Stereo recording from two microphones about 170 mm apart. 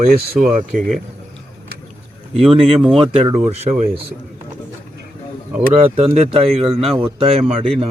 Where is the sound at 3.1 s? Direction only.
40° right (ahead or behind).